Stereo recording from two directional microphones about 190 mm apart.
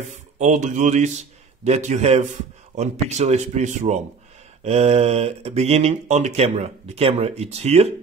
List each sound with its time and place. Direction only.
0.4 s a man's voice: 40° right (ahead or behind)